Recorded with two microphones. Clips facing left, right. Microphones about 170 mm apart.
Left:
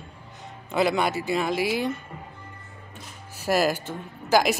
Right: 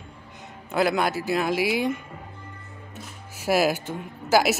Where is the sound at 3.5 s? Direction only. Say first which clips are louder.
Right 1 dB; 10° right (ahead or behind).